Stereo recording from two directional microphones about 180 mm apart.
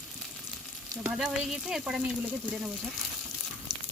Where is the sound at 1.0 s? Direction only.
5° right (ahead or behind).